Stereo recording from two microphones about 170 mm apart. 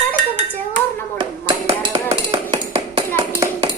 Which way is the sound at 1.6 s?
35° right (ahead or behind).